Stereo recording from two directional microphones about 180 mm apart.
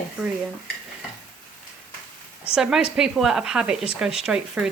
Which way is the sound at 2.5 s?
5° right (ahead or behind).